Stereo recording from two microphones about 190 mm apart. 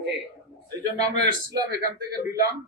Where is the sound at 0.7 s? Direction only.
20° right (ahead or behind).